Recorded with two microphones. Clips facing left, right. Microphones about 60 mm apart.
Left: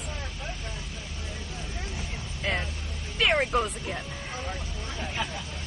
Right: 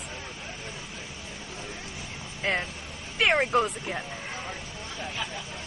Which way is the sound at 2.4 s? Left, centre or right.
Right.